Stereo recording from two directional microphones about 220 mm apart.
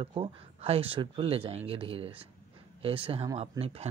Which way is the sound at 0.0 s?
25° right (ahead or behind).